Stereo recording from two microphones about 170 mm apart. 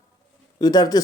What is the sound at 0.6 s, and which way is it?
Speech, 20° left (ahead or behind).